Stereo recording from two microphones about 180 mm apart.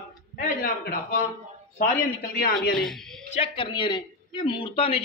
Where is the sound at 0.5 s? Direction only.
55° left (ahead or behind).